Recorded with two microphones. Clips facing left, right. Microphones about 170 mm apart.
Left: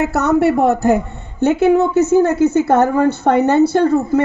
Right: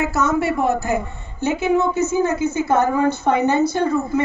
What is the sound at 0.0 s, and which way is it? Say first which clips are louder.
A woman's voice: left 5 dB; 65° left (ahead or behind).